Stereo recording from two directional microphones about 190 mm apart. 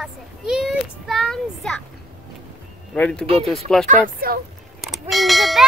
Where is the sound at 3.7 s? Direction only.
5° left (ahead or behind).